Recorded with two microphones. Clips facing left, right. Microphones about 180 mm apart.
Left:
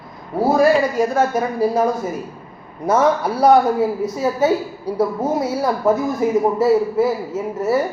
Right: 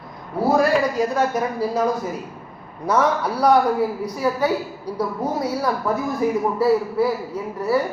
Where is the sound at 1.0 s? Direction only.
25° left (ahead or behind).